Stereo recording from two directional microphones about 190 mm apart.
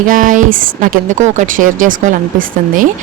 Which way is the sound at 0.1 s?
45° right (ahead or behind).